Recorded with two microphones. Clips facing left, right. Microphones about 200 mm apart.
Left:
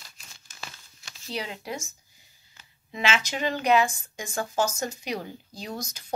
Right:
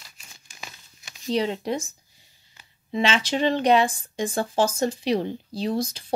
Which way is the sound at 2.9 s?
30° right (ahead or behind).